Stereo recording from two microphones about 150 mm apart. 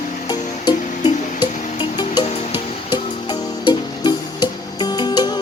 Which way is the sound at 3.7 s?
30° left (ahead or behind).